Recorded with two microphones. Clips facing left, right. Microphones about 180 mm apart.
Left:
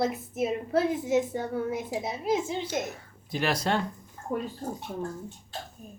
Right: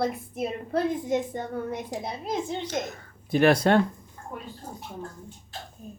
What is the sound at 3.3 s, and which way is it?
Speech, 55° right (ahead or behind).